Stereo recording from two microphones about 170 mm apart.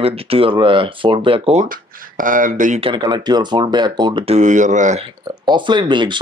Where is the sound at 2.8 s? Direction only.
25° right (ahead or behind); by 5.0 s 45° right (ahead or behind).